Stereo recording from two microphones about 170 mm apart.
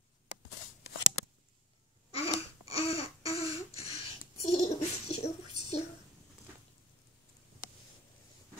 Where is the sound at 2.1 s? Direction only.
35° left (ahead or behind).